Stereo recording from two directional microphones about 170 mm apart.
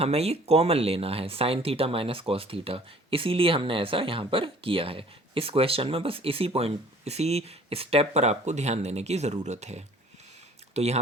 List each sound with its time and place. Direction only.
0.0 s speech: 35° right (ahead or behind)